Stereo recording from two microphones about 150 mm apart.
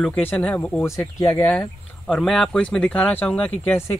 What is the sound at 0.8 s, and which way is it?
Speech, 20° left (ahead or behind).